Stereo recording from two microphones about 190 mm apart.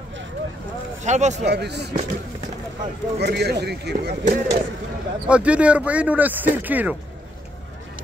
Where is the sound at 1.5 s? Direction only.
60° right (ahead or behind).